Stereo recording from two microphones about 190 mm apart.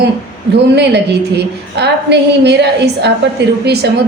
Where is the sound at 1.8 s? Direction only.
60° right (ahead or behind).